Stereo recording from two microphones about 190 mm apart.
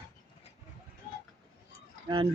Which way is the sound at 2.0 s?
25° right (ahead or behind).